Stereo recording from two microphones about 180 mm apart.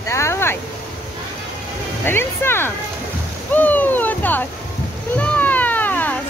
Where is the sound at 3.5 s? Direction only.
10° left (ahead or behind).